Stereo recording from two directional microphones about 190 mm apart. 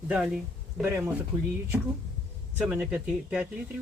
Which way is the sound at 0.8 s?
15° right (ahead or behind).